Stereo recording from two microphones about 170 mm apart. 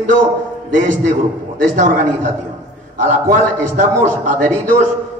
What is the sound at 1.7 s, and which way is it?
A man's voice, 50° right (ahead or behind).